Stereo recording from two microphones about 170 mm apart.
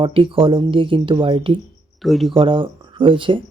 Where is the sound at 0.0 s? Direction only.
30° right (ahead or behind).